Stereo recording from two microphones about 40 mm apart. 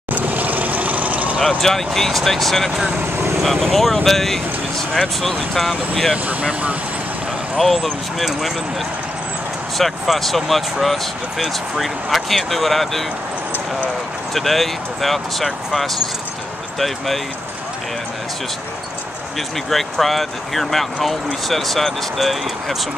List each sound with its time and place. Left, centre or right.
0.1 s vehicle: right
1.6 s speech: centre
6.2 s speech: right
7.5 s speech: centre
10.1 s speech: centre
14.3 s speech: centre
19.7 s speech: centre